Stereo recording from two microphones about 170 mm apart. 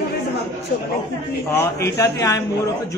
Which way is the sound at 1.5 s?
15° left (ahead or behind).